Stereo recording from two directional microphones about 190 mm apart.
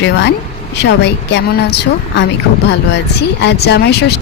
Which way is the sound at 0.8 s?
65° left (ahead or behind).